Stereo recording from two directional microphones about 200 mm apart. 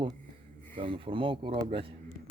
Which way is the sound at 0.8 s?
25° right (ahead or behind).